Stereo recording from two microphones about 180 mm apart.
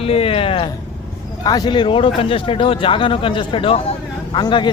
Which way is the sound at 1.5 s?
20° left (ahead or behind).